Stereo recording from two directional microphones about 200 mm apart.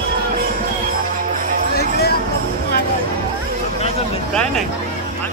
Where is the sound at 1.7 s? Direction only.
50° left (ahead or behind).